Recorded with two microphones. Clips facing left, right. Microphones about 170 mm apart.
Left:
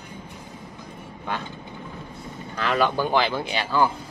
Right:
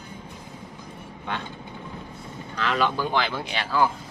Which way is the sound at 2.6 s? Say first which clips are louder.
Left 2 dB; 50° left (ahead or behind).